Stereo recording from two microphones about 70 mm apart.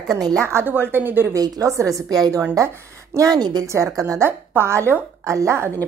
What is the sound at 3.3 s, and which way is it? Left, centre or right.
Speech, right.